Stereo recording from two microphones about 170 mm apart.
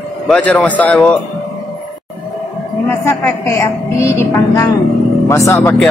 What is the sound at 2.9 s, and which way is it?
A woman's voice, 15° left (ahead or behind).